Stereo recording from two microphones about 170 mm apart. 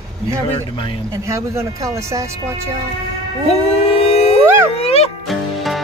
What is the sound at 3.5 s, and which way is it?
Howl, 35° left (ahead or behind).